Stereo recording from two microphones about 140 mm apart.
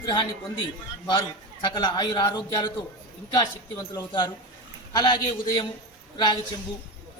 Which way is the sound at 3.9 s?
35° left (ahead or behind).